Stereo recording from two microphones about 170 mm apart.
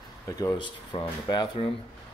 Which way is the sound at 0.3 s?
20° left (ahead or behind).